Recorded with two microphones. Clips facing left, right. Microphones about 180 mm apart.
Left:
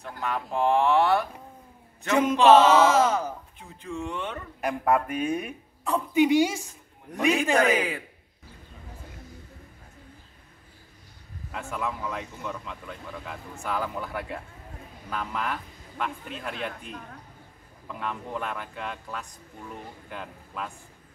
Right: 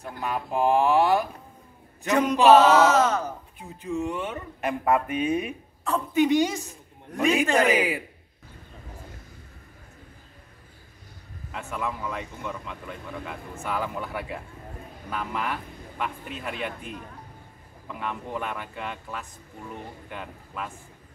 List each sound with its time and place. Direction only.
0.0 s speech: 10° right (ahead or behind)
2.2 s speech: 10° right (ahead or behind)
2.8 s a woman's voice: 10° left (ahead or behind)
3.5 s speech: 15° right (ahead or behind)
5.9 s a woman's voice: 10° left (ahead or behind)
7.5 s speech: 10° right (ahead or behind)
11.5 s speech: centre (ahead or behind)